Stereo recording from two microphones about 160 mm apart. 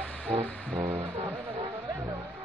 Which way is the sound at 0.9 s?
40° right (ahead or behind).